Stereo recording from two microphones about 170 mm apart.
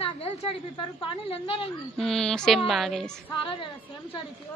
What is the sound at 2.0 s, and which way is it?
A woman's voice, 5° left (ahead or behind).